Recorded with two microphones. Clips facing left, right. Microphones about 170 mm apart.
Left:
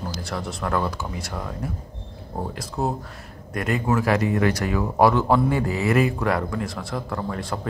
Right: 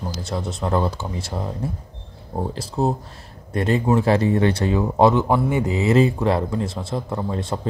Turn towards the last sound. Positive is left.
turn(degrees=-25)  # may be behind; listen again after turning